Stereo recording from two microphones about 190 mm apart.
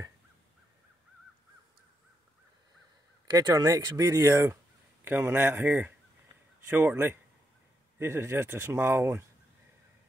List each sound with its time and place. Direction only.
3.3 s speech: 20° right (ahead or behind)